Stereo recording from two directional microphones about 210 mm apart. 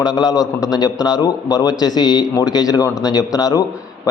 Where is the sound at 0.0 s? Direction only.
20° left (ahead or behind).